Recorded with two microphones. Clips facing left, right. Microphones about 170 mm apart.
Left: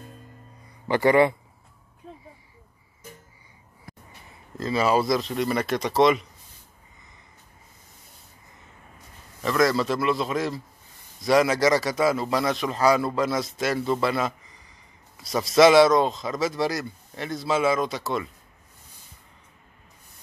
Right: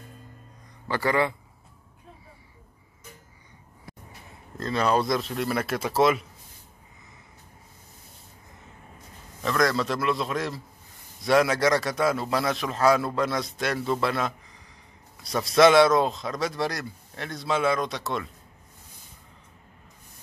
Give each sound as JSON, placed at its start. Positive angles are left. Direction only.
{"t": 0.8, "sound": "speech", "side_deg": 20}
{"t": 4.6, "sound": "a man's voice", "side_deg": 5}
{"t": 9.4, "sound": "a man's voice", "side_deg": 0}